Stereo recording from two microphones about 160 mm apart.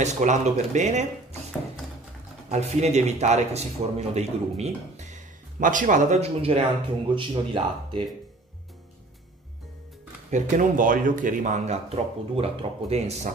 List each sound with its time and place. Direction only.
0.0 s speech: 45° right (ahead or behind)
2.5 s speech: 45° right (ahead or behind)
10.3 s speech: 50° right (ahead or behind)